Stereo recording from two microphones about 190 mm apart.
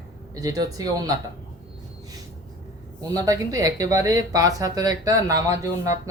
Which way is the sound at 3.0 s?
20° right (ahead or behind).